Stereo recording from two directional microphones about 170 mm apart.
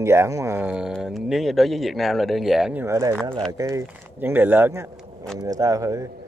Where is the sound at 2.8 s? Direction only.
15° right (ahead or behind).